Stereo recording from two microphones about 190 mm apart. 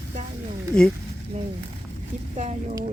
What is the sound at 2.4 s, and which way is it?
Speech, 35° right (ahead or behind).